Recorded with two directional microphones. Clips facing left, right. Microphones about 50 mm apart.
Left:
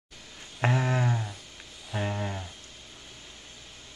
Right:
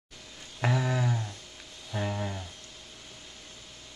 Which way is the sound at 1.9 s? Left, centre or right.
Centre.